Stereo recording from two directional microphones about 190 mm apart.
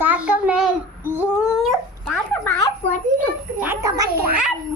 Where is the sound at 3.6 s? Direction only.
15° right (ahead or behind).